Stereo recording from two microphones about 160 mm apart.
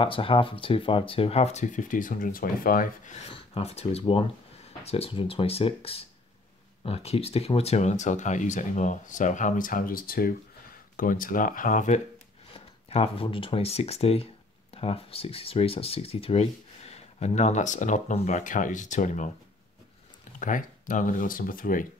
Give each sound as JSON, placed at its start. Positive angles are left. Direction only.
{"t": 0.0, "sound": "speech", "side_deg": 35}
{"t": 3.2, "sound": "speech", "side_deg": 40}
{"t": 12.5, "sound": "speech", "side_deg": 40}
{"t": 20.3, "sound": "speech", "side_deg": 55}